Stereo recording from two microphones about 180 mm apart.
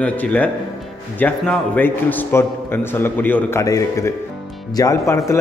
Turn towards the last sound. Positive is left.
turn(degrees=15)  # may be behind; listen again after turning